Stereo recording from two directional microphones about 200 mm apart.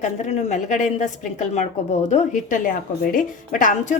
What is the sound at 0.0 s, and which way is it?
A woman's voice, 35° left (ahead or behind).